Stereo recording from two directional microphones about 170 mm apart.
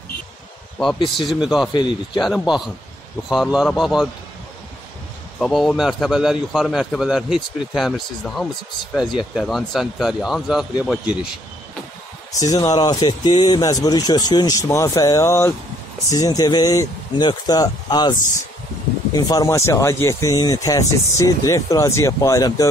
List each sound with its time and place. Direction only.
0.9 s speech: 30° left (ahead or behind)
1.4 s a man's voice: centre (ahead or behind)
1.7 s speech: 25° left (ahead or behind)
2.1 s a man's voice: centre (ahead or behind)
5.4 s a man's voice: 5° left (ahead or behind)
12.4 s speech: 20° left (ahead or behind)
19.1 s speech: 20° left (ahead or behind)